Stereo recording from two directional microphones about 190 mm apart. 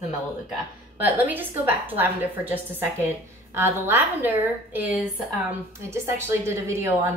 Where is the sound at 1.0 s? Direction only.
10° right (ahead or behind).